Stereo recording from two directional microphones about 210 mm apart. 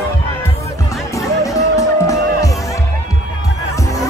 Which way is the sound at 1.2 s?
15° left (ahead or behind).